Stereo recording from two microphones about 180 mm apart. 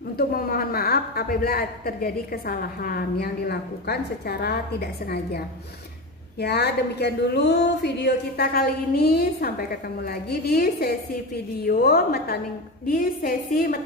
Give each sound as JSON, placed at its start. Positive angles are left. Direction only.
{"t": 0.3, "sound": "a woman's voice", "side_deg": 55}
{"t": 6.4, "sound": "a woman's voice", "side_deg": 65}